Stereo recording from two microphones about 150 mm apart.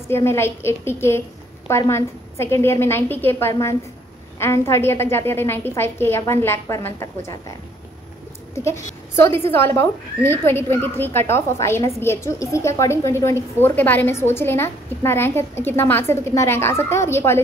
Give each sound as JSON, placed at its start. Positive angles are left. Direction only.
{"t": 0.1, "sound": "a woman's voice", "side_deg": 15}
{"t": 8.5, "sound": "a woman's voice", "side_deg": 20}